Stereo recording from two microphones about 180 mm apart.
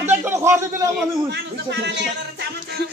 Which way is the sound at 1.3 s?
70° right (ahead or behind).